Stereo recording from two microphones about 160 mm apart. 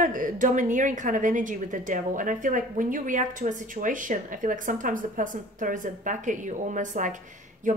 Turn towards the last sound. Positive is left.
turn(degrees=-50)  # may be behind; listen again after turning